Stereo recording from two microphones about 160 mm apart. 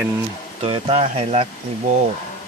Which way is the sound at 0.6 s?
35° right (ahead or behind).